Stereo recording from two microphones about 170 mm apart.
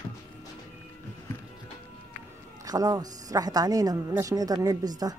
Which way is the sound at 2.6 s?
20° right (ahead or behind).